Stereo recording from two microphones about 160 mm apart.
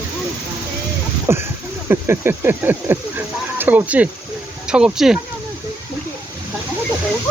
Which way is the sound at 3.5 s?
10° right (ahead or behind).